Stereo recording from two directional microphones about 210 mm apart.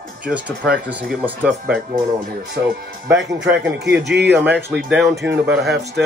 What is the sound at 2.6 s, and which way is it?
Speech, 15° right (ahead or behind).